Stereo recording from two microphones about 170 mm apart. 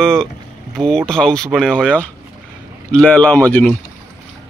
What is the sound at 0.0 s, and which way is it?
Speech, 5° left (ahead or behind).